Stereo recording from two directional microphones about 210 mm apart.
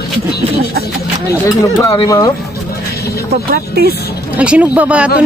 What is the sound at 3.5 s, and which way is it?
Speech, 45° right (ahead or behind).